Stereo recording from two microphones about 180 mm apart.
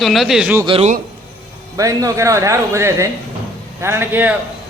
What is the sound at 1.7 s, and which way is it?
A man's voice, 20° right (ahead or behind).